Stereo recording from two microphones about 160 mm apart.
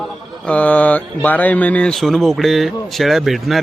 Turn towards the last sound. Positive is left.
turn(degrees=0)  # may be behind; listen again after turning